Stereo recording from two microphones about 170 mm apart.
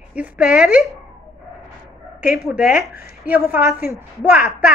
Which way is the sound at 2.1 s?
5° right (ahead or behind).